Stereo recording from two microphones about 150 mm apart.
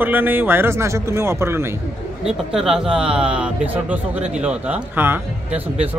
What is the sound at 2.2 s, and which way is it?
A man's voice, 5° right (ahead or behind).